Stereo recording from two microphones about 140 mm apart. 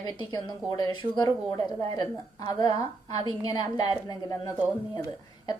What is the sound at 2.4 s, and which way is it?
A woman's voice, 30° left (ahead or behind).